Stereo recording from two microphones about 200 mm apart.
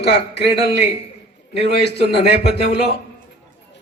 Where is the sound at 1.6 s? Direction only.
55° right (ahead or behind).